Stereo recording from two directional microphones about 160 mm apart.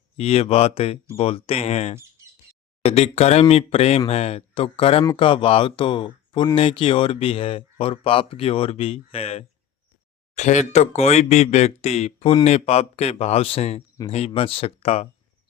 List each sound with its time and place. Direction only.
0.2 s speech: 40° left (ahead or behind)